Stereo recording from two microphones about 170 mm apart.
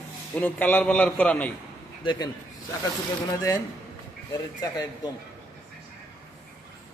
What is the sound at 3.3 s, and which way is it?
Speech, 25° left (ahead or behind).